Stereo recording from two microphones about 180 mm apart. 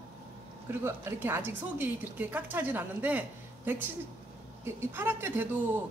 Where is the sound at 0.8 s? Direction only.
10° right (ahead or behind).